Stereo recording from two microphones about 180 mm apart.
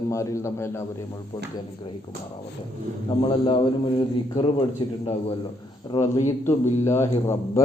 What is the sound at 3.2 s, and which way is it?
Speech, 25° left (ahead or behind).